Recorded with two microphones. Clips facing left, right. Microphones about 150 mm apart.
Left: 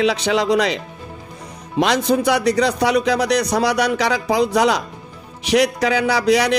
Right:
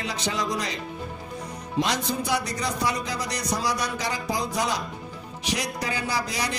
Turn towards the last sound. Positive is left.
turn(degrees=75)  # may be behind; listen again after turning